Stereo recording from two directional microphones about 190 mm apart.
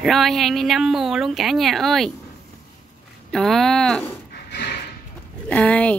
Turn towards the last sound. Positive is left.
turn(degrees=5)  # may be behind; listen again after turning